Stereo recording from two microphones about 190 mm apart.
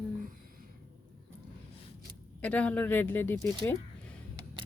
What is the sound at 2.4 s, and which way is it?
Speech, 5° left (ahead or behind).